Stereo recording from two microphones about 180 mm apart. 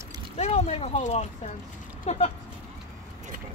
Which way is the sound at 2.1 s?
35° left (ahead or behind).